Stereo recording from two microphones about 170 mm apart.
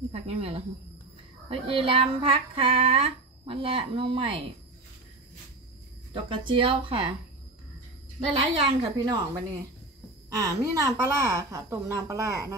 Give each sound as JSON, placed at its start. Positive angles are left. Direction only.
{"t": 0.1, "sound": "child singing", "side_deg": -35}
{"t": 6.1, "sound": "a woman's voice", "side_deg": -30}
{"t": 8.3, "sound": "child singing", "side_deg": -30}
{"t": 10.3, "sound": "a woman's voice", "side_deg": -20}